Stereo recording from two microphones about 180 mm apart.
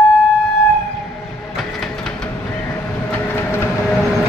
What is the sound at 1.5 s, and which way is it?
Train, centre (ahead or behind).